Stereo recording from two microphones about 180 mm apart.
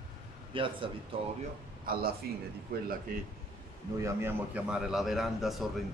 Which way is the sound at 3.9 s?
15° right (ahead or behind).